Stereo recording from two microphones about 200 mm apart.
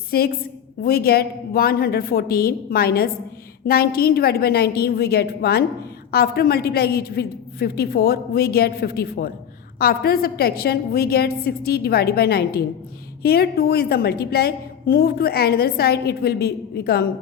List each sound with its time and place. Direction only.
0.1 s a woman's voice: 50° left (ahead or behind)